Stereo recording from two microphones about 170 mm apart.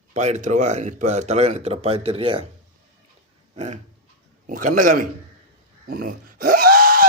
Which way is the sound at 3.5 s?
45° right (ahead or behind).